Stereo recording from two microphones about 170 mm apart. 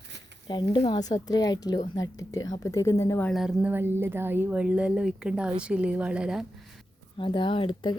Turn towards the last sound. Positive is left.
turn(degrees=30)  # may be behind; listen again after turning